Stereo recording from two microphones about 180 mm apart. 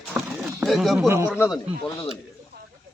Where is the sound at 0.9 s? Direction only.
15° right (ahead or behind).